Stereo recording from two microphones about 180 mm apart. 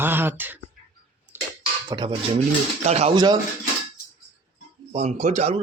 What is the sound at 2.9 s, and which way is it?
Speech, 35° right (ahead or behind).